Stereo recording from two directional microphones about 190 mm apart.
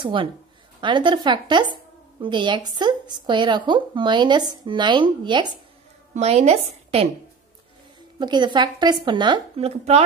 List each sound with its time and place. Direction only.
0.0 s a woman's voice: 25° right (ahead or behind)
8.2 s speech: 25° right (ahead or behind)